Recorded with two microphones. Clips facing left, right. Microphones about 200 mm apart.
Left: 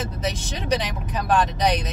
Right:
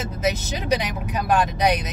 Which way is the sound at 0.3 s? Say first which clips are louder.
Right 2 dB; 5° right (ahead or behind).